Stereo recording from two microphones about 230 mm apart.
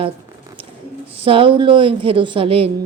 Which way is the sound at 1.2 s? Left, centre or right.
Right.